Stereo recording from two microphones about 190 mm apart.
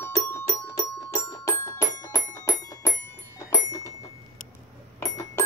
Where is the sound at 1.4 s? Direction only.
15° left (ahead or behind).